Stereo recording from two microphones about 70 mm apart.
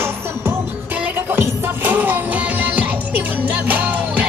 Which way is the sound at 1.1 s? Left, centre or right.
Right.